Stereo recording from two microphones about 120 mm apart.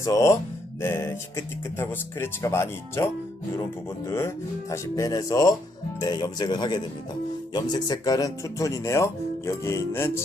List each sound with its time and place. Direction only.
0.0 s speech: 25° left (ahead or behind)